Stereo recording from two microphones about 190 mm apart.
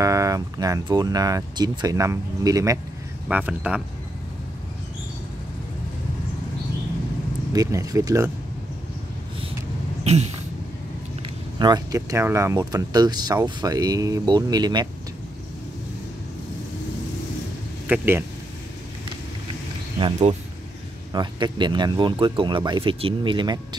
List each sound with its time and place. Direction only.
0.0 s speech: 15° right (ahead or behind)
7.5 s speech: 20° right (ahead or behind)
10.1 s a sound: 35° right (ahead or behind)
11.5 s speech: 20° right (ahead or behind)
17.8 s speech: 10° right (ahead or behind)
21.1 s speech: 25° right (ahead or behind)